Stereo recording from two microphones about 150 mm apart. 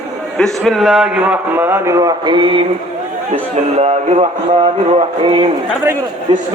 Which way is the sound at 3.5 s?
45° right (ahead or behind).